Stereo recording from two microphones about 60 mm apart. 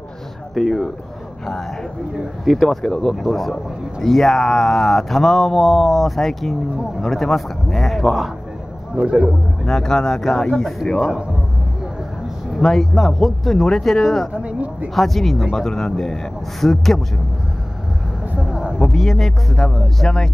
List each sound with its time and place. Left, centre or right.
0.6 s speech: centre
2.4 s speech: centre
8.9 s speech: right
9.7 s speech: centre
12.5 s speech: centre
14.3 s speech: right
15.0 s speech: centre
18.4 s a sound: centre
18.8 s speech: centre